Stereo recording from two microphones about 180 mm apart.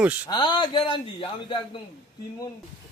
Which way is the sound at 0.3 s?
25° left (ahead or behind).